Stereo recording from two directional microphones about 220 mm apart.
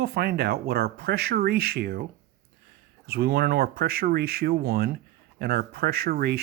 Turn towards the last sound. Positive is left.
turn(degrees=-45)  # may be behind; listen again after turning